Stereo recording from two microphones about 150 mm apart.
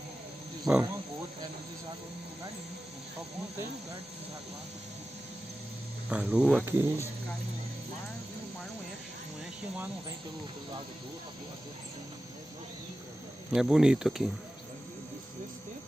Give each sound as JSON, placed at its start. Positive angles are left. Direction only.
{"t": 0.7, "sound": "speech", "side_deg": -25}
{"t": 6.0, "sound": "speech", "side_deg": -10}
{"t": 13.5, "sound": "speech", "side_deg": -5}